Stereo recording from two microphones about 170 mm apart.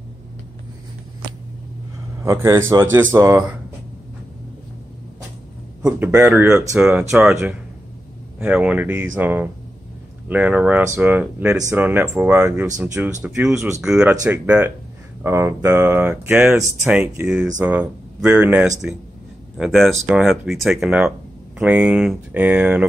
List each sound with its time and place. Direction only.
2.2 s speech: 15° right (ahead or behind)
5.9 s speech: 10° right (ahead or behind)
6.8 s speech: 5° right (ahead or behind)